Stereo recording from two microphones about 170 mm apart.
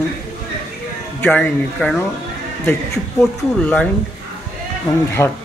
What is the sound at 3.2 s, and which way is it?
Speech, 5° left (ahead or behind).